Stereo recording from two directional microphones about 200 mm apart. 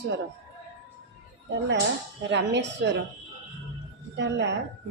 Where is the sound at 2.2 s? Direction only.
60° right (ahead or behind).